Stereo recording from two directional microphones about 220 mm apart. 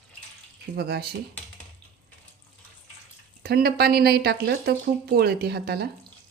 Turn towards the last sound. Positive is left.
turn(degrees=-45)  # may be behind; listen again after turning